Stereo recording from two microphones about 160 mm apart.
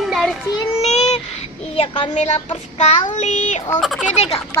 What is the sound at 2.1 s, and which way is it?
Speech, 45° left (ahead or behind).